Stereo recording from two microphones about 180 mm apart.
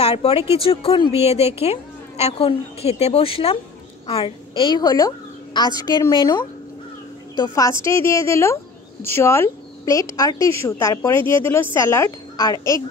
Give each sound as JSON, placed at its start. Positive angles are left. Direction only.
{"t": 0.0, "sound": "a woman's voice", "side_deg": 35}